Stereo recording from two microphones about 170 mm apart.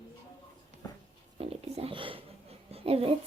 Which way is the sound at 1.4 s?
35° right (ahead or behind).